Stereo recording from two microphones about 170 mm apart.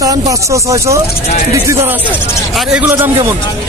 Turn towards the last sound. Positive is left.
turn(degrees=-10)  # may be behind; listen again after turning